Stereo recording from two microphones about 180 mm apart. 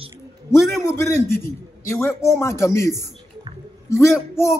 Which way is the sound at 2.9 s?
20° right (ahead or behind).